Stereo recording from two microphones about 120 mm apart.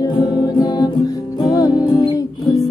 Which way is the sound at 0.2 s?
30° left (ahead or behind).